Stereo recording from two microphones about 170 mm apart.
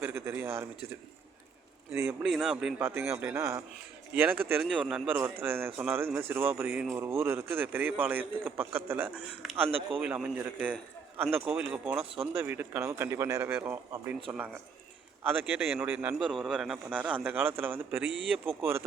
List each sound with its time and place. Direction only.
0.0 s a sound: 15° right (ahead or behind)
2.2 s a man's voice: 5° right (ahead or behind)
16.1 s a man's voice: centre (ahead or behind)